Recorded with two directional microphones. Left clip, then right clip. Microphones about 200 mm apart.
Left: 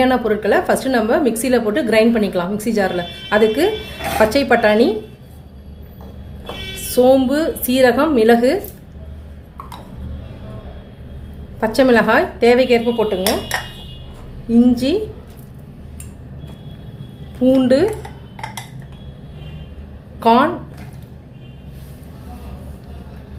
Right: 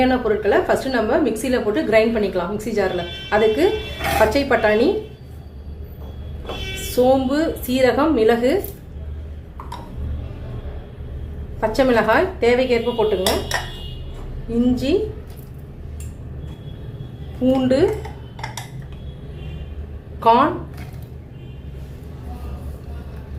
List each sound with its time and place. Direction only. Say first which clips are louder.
0.0 s a woman's voice: left 2 dB; 50° left (ahead or behind)
6.9 s a woman's voice: left 4 dB; 50° left (ahead or behind)
11.6 s a woman's voice: left 3 dB; 50° left (ahead or behind)
14.5 s a woman's voice: left 5 dB; 50° left (ahead or behind)
17.4 s a woman's voice: left 4 dB; 50° left (ahead or behind)
20.1 s speech: left 1 dB; 50° left (ahead or behind)